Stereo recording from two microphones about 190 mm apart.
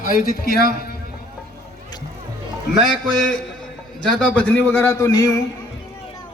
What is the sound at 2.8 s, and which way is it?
Music, 5° left (ahead or behind).